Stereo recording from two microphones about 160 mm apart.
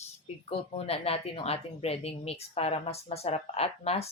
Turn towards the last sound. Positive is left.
turn(degrees=40)  # may be behind; listen again after turning